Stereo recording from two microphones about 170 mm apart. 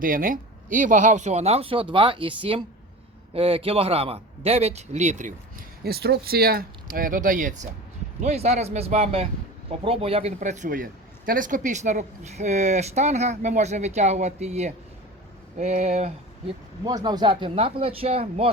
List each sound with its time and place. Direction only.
0.0 s speech: 55° right (ahead or behind); by 16.1 s 40° right (ahead or behind)
16.8 s speech: 25° right (ahead or behind)